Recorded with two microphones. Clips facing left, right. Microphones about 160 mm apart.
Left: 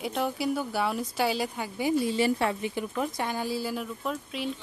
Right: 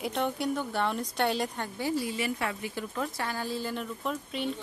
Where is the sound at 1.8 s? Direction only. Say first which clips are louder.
Left 4 dB; 15° left (ahead or behind).